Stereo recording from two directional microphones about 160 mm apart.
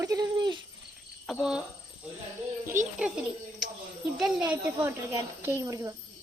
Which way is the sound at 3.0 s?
5° right (ahead or behind).